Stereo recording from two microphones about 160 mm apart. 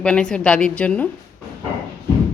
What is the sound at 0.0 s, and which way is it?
A woman's voice, 5° left (ahead or behind).